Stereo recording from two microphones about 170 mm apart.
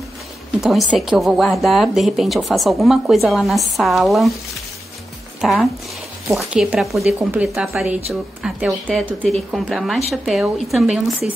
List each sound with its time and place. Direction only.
0.6 s a woman's voice: centre (ahead or behind)
5.4 s a woman's voice: centre (ahead or behind)